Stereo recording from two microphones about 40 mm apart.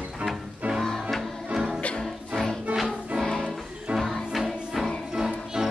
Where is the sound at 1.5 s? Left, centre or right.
Centre.